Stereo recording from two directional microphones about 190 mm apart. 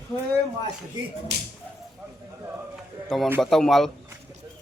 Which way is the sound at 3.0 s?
Centre (ahead or behind).